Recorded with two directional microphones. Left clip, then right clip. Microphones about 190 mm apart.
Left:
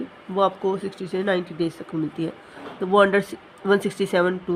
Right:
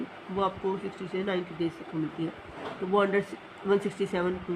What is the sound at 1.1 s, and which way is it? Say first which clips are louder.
Speech: left 8 dB; 55° left (ahead or behind).